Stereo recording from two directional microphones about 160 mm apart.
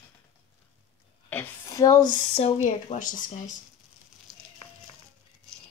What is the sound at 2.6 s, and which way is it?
Speech, 50° left (ahead or behind).